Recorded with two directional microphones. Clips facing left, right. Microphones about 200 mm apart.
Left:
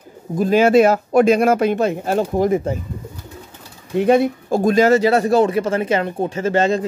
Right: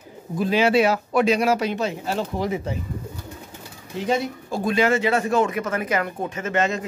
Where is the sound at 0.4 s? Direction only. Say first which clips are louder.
Left 6 dB; 45° left (ahead or behind).